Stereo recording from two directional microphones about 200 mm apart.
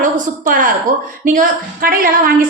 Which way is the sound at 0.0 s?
40° right (ahead or behind).